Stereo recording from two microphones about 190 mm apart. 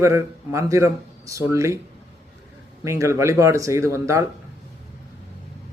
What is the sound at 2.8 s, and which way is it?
Speech, 15° right (ahead or behind).